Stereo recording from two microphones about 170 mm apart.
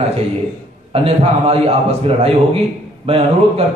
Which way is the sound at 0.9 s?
35° right (ahead or behind).